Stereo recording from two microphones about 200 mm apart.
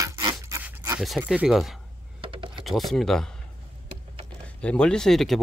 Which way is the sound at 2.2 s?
25° right (ahead or behind).